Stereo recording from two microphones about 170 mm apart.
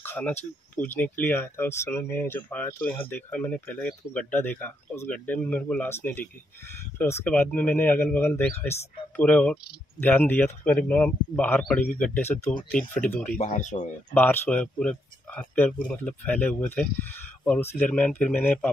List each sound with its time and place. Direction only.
0.0 s a sound: 10° left (ahead or behind)
0.7 s speech: 10° left (ahead or behind)
13.4 s speech: 45° left (ahead or behind)
14.1 s speech: 10° left (ahead or behind)